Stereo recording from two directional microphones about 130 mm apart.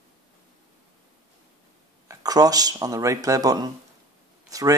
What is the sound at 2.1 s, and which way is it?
Speech, 30° right (ahead or behind).